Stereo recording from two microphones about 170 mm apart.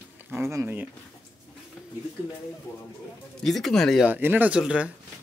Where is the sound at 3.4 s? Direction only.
Centre (ahead or behind).